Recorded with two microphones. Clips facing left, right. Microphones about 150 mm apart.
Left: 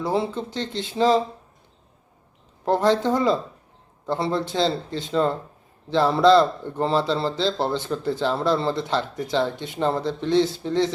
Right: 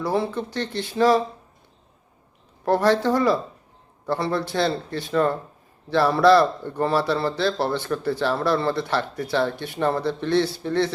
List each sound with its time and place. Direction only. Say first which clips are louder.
0.0 s speech: even; 20° left (ahead or behind)
2.6 s speech: right 1 dB; 20° left (ahead or behind)